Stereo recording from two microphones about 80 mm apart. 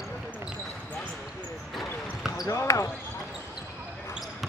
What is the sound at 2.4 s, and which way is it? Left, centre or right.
Basketball bounce, left.